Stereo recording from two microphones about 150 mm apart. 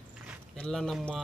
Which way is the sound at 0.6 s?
5° left (ahead or behind).